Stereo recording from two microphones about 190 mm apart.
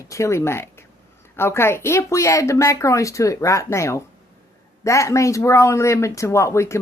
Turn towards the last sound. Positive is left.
turn(degrees=15)  # may be behind; listen again after turning